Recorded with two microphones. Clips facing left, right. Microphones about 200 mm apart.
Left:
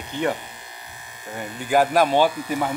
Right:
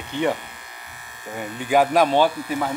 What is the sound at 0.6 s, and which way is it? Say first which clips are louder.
Electric shaver: left 1 dB; 25° left (ahead or behind).